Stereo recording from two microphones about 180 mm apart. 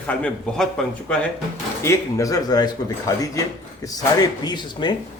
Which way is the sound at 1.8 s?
15° left (ahead or behind).